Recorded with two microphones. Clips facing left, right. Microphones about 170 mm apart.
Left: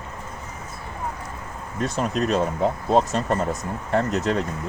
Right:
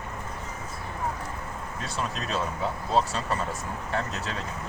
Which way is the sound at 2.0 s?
45° left (ahead or behind).